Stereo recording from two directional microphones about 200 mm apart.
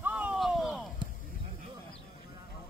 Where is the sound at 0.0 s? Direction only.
5° right (ahead or behind).